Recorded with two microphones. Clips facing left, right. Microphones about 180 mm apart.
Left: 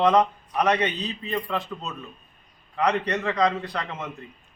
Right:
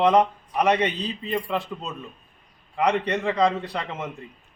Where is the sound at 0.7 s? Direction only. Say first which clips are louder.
Right 2 dB; 30° right (ahead or behind).